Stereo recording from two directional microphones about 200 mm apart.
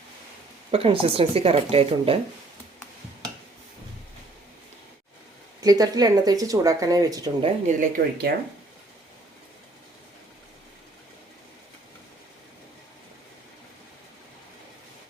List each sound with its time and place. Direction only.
0.7 s speech: 30° right (ahead or behind)
5.5 s speech: 20° right (ahead or behind)
7.4 s speech: 40° right (ahead or behind)